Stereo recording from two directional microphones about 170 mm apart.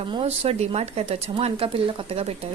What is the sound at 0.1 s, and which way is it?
Speech, 35° right (ahead or behind).